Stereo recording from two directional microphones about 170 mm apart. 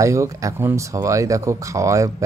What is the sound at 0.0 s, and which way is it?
Speech, 20° right (ahead or behind).